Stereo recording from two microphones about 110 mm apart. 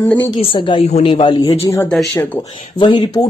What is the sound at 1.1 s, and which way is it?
Speech, 50° left (ahead or behind).